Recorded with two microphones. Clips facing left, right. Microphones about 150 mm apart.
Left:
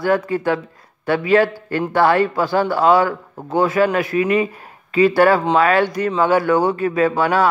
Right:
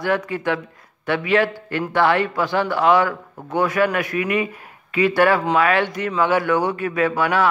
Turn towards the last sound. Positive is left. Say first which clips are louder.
# left 3 dB
turn(degrees=35)  # may be behind; listen again after turning